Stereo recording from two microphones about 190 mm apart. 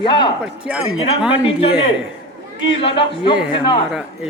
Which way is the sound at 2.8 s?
30° left (ahead or behind).